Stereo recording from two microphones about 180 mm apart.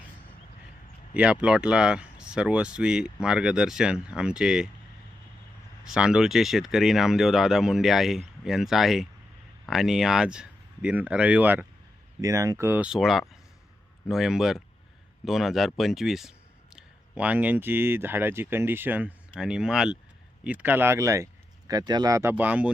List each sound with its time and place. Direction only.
1.1 s speech: 5° right (ahead or behind)
5.8 s speech: 5° right (ahead or behind)